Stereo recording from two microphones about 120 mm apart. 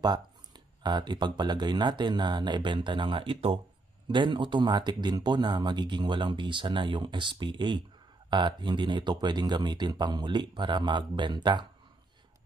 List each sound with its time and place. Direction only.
0.0 s speech: 35° right (ahead or behind)